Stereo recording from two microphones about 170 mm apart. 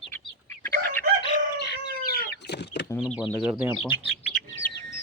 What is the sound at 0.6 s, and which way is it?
Fowl, 15° left (ahead or behind).